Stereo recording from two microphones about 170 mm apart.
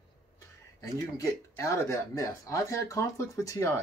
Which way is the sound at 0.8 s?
20° left (ahead or behind).